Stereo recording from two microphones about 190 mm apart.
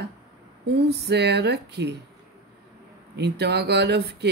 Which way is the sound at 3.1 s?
60° right (ahead or behind).